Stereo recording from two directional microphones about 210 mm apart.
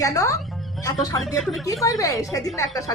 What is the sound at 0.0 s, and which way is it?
Speech, 15° left (ahead or behind).